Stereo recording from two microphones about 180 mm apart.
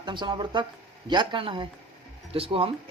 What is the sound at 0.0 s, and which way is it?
Speech, 25° right (ahead or behind).